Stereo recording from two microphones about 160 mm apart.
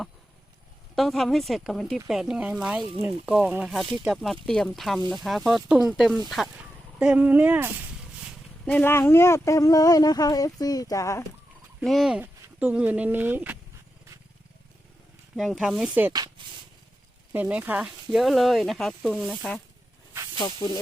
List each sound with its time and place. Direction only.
0.9 s speech: centre (ahead or behind)
8.6 s speech: 10° left (ahead or behind)
11.8 s speech: centre (ahead or behind)
15.4 s speech: centre (ahead or behind)
17.3 s speech: 10° right (ahead or behind); by 20.8 s 15° left (ahead or behind)